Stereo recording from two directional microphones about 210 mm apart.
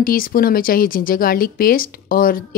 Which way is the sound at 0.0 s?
45° left (ahead or behind).